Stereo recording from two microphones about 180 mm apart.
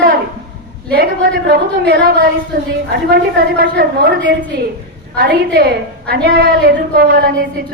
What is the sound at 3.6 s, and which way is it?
A woman's voice, 65° right (ahead or behind).